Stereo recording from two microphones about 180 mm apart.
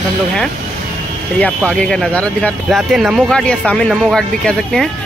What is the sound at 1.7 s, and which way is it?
Speech, centre (ahead or behind).